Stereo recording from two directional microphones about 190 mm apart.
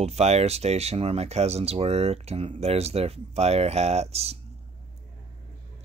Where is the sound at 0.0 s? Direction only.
35° right (ahead or behind).